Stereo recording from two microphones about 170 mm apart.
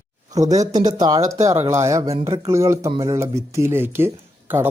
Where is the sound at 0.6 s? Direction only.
25° right (ahead or behind).